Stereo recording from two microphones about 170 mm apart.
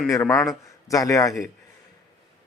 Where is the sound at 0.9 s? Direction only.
20° left (ahead or behind).